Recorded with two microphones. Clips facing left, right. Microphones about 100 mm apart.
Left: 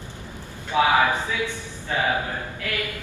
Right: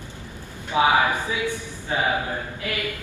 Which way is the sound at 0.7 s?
15° right (ahead or behind).